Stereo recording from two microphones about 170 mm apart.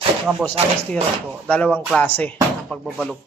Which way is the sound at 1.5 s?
10° left (ahead or behind).